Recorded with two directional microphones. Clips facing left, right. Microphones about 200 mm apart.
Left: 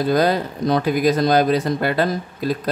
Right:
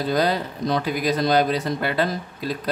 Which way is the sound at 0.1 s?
50° left (ahead or behind).